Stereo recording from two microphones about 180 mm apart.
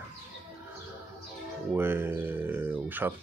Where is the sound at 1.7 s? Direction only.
10° right (ahead or behind).